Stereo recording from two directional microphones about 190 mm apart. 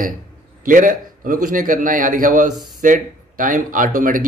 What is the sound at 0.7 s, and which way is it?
Speech, 45° right (ahead or behind).